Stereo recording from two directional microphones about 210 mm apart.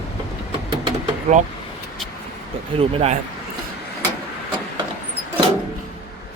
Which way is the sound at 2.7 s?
30° right (ahead or behind).